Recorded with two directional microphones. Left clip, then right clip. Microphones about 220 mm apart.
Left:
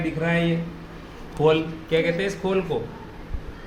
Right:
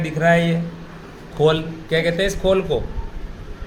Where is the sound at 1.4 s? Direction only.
35° right (ahead or behind).